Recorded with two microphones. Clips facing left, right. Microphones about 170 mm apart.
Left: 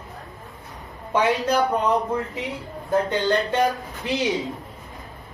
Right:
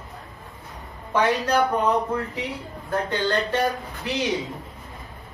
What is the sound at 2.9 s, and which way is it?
Speech, 20° left (ahead or behind).